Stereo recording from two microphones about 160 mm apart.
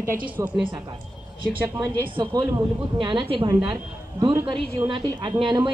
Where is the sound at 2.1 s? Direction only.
25° right (ahead or behind).